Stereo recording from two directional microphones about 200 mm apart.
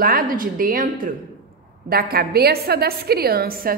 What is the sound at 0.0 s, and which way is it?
Speech, 45° right (ahead or behind).